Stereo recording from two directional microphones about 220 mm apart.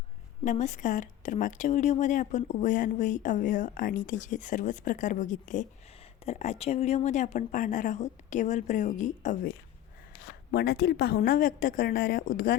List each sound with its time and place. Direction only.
0.4 s a woman's voice: 35° left (ahead or behind)
10.5 s a woman's voice: 45° left (ahead or behind)